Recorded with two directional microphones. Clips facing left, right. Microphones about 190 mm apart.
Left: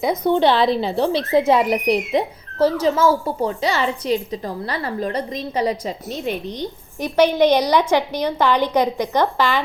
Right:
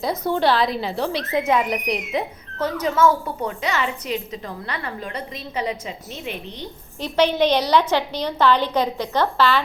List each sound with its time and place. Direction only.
0.3 s speech: 20° left (ahead or behind); by 6.7 s 40° left (ahead or behind)
7.0 s a woman's voice: 10° left (ahead or behind)